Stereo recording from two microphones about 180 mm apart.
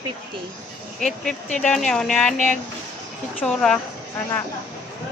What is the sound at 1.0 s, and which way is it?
Speech, centre (ahead or behind).